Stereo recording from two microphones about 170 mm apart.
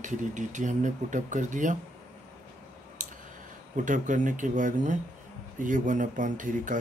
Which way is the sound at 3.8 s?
50° right (ahead or behind).